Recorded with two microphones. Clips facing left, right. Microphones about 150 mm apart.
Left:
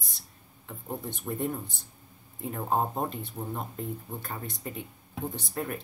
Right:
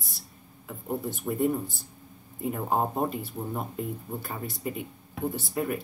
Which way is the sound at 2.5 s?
5° right (ahead or behind).